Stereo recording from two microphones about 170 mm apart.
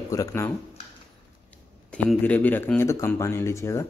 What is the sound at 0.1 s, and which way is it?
Speech, 20° left (ahead or behind).